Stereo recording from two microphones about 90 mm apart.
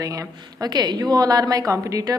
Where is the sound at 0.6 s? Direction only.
50° right (ahead or behind).